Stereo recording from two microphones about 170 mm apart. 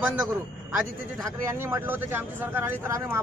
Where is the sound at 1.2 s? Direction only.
15° right (ahead or behind).